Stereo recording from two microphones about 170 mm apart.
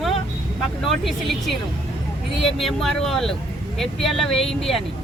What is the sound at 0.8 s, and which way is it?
Speech, centre (ahead or behind).